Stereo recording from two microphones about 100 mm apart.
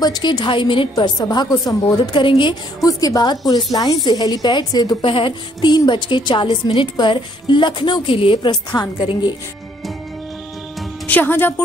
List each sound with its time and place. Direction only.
0.0 s a woman's voice: 45° left (ahead or behind)
0.9 s a woman's voice: 45° left (ahead or behind)
2.1 s a woman's voice: 55° left (ahead or behind)
2.8 s a woman's voice: 35° left (ahead or behind)
5.0 s a woman's voice: 60° left (ahead or behind)
8.5 s a woman's voice: 45° left (ahead or behind)
11.1 s speech: 20° left (ahead or behind)